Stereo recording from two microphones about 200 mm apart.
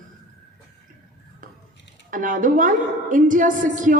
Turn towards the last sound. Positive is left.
turn(degrees=-40)  # may be behind; listen again after turning